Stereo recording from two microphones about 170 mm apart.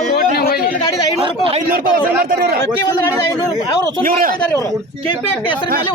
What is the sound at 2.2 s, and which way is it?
Speech, 60° right (ahead or behind).